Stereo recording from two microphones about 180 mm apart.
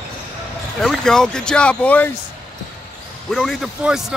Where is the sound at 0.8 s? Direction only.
5° left (ahead or behind).